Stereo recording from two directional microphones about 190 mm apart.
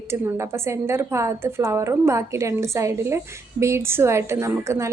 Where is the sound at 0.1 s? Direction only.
15° right (ahead or behind).